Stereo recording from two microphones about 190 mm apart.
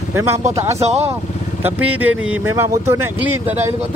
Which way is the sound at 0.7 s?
35° right (ahead or behind).